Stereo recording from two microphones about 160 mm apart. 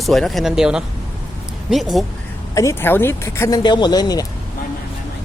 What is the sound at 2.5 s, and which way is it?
Speech, 15° left (ahead or behind).